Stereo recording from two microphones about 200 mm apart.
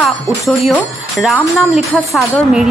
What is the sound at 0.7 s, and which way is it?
A woman's voice, centre (ahead or behind).